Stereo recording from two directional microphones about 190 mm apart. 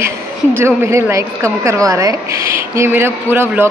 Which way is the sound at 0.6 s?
15° right (ahead or behind).